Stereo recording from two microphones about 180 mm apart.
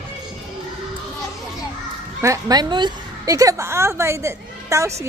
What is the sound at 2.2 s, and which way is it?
A woman's voice, 20° right (ahead or behind).